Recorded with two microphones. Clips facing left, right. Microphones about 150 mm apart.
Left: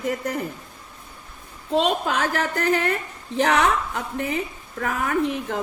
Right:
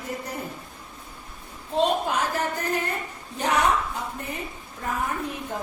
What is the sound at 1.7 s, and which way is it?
A woman's voice, 90° left.